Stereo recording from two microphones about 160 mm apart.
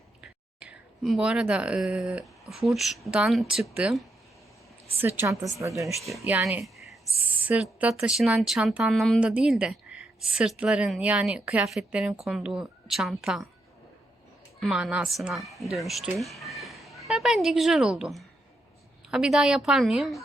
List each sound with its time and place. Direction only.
0.2 s a sound: 5° right (ahead or behind)
2.5 s a woman's voice: centre (ahead or behind)
5.0 s a woman's voice: 15° right (ahead or behind)
14.6 s a woman's voice: 5° right (ahead or behind)